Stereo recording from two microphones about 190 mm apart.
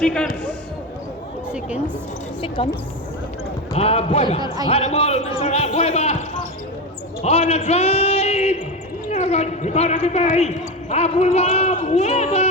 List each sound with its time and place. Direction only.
0.0 s speech: 5° left (ahead or behind)
2.6 s speech: 30° left (ahead or behind)
3.8 s a man's voice: 30° left (ahead or behind)
4.4 s speech: 20° right (ahead or behind)
4.7 s a man's voice: 30° left (ahead or behind)
7.2 s a man's voice: 35° left (ahead or behind)